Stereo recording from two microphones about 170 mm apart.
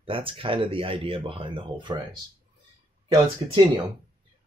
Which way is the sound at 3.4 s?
30° right (ahead or behind).